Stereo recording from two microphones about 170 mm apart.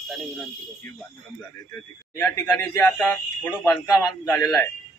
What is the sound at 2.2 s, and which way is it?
Speech, 15° left (ahead or behind).